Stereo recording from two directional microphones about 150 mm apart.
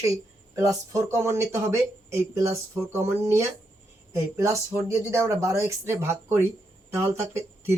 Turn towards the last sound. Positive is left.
turn(degrees=-20)  # may be behind; listen again after turning